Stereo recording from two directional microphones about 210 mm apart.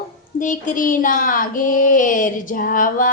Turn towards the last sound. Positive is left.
turn(degrees=40)  # may be behind; listen again after turning